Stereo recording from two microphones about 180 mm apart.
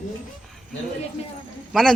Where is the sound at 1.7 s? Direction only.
Centre (ahead or behind).